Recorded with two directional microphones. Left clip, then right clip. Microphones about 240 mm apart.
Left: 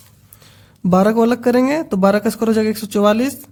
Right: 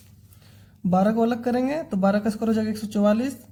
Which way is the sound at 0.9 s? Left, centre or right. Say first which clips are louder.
Left 8 dB; left.